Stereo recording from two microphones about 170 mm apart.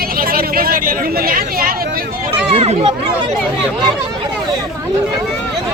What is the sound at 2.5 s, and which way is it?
Speech, 35° right (ahead or behind).